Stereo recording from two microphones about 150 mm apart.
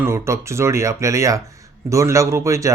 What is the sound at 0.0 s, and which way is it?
Speech, 20° right (ahead or behind).